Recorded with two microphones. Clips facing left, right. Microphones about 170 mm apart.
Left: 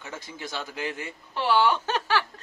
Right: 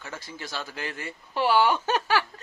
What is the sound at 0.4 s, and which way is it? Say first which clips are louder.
Speech: left 2 dB; 20° left (ahead or behind).